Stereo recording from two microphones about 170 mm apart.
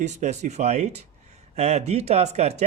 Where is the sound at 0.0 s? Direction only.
45° right (ahead or behind).